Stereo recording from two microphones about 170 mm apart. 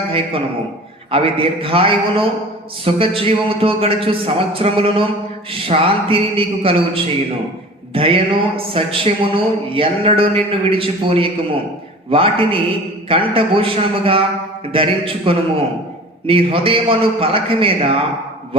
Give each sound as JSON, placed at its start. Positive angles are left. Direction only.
{"t": 0.1, "sound": "speech", "side_deg": -35}